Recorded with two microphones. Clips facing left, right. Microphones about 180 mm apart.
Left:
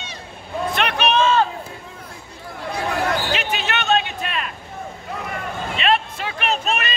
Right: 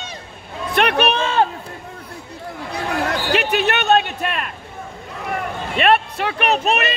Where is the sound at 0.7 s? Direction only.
55° right (ahead or behind).